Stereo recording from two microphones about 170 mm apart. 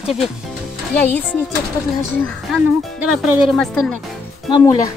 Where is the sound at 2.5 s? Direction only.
Centre (ahead or behind).